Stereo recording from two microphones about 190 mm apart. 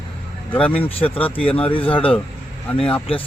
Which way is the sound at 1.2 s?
30° left (ahead or behind).